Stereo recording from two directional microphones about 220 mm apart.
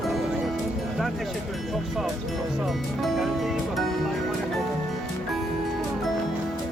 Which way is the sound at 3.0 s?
Centre (ahead or behind).